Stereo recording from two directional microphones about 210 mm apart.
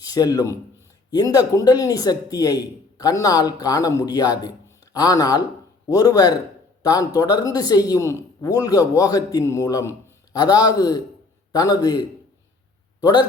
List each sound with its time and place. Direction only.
0.0 s a man's voice: 15° left (ahead or behind)